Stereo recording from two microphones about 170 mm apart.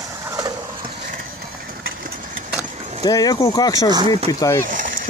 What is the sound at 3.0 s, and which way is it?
Speech, 20° left (ahead or behind).